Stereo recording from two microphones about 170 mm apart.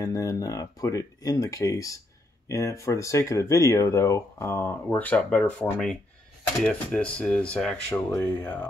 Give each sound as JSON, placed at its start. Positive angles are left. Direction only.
{"t": 0.0, "sound": "speech", "side_deg": 20}